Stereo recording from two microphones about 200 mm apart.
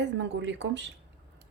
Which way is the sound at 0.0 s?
65° right (ahead or behind).